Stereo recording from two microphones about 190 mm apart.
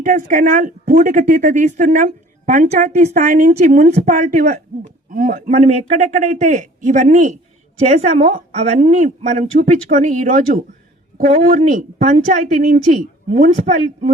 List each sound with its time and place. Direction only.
0.0 s speech: 40° right (ahead or behind)
12.1 s speech: 40° right (ahead or behind)